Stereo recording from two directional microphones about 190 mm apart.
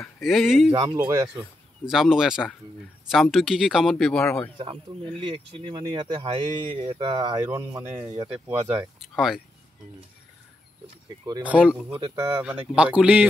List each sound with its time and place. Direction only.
0.2 s speech: centre (ahead or behind)
0.7 s speech: 15° right (ahead or behind)
1.9 s speech: 5° right (ahead or behind)
5.2 s speech: 25° right (ahead or behind)
7.5 s speech: 10° right (ahead or behind)
8.0 s speech: 25° right (ahead or behind)
9.0 s speech: centre (ahead or behind)
11.4 s speech: 5° right (ahead or behind)
12.0 s speech: 25° right (ahead or behind)
12.4 s speech: 5° right (ahead or behind)